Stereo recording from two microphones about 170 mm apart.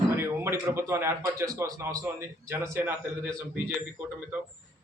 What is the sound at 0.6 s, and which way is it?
A man's voice, 15° right (ahead or behind).